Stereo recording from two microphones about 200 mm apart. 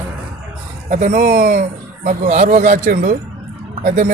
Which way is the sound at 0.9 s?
35° right (ahead or behind).